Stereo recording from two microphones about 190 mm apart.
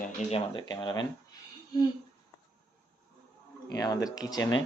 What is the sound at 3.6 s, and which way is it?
Speech, 20° left (ahead or behind).